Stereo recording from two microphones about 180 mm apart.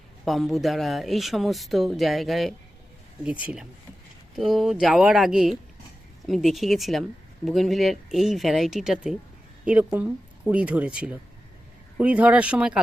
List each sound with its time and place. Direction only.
0.3 s speech: centre (ahead or behind)